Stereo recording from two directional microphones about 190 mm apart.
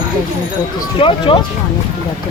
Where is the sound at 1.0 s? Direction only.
25° left (ahead or behind).